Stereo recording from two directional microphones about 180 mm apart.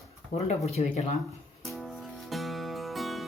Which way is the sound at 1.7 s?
Centre (ahead or behind).